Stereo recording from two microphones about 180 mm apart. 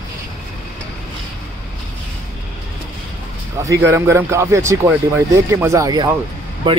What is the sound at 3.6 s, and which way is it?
Speech, 15° right (ahead or behind).